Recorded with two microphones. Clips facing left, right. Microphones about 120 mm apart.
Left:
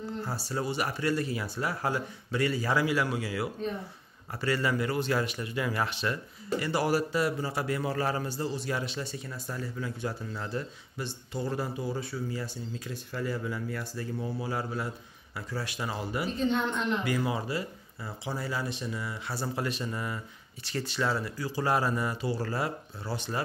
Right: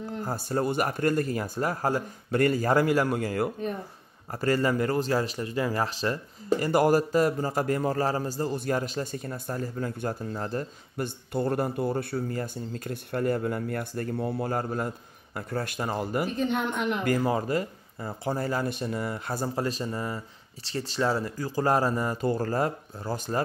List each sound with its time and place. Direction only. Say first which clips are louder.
0.1 s a man's voice: right 6 dB; 50° right (ahead or behind)
6.6 s a man's voice: right 6 dB; 45° right (ahead or behind)
16.3 s speech: right 1 dB; 10° right (ahead or behind)
17.0 s a man's voice: right 5 dB; 45° right (ahead or behind)